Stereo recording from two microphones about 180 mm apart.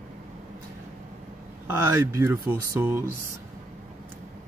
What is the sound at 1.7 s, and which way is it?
Speech, 15° right (ahead or behind).